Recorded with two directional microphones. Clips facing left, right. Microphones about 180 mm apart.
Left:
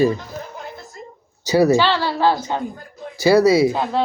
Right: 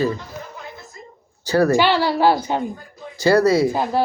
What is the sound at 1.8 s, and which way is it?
Speech, 15° right (ahead or behind).